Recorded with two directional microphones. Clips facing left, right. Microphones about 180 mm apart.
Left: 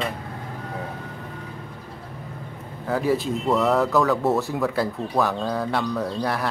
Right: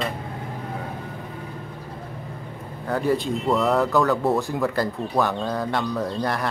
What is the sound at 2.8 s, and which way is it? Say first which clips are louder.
Speech: even; centre (ahead or behind).